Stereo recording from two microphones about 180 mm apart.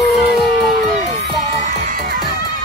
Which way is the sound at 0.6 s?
60° right (ahead or behind).